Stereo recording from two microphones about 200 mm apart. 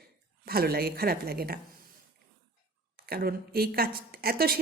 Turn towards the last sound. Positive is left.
turn(degrees=-50)  # may be behind; listen again after turning